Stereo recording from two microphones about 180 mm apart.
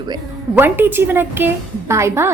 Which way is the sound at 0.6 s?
10° right (ahead or behind).